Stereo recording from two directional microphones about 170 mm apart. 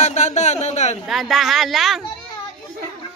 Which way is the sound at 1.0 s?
Centre (ahead or behind).